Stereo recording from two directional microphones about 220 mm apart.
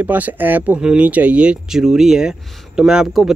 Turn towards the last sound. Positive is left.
turn(degrees=0)  # may be behind; listen again after turning